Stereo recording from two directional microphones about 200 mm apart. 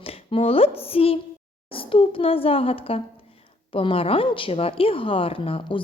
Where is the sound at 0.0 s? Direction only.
25° left (ahead or behind).